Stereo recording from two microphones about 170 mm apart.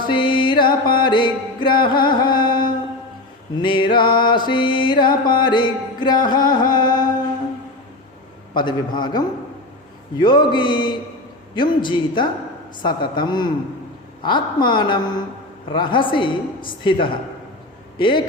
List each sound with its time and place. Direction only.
0.1 s music: 30° left (ahead or behind)
8.5 s music: 25° left (ahead or behind)
17.9 s a man's voice: 30° left (ahead or behind)